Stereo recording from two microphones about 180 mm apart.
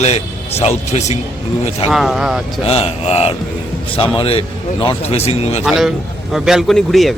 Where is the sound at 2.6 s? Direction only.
35° left (ahead or behind).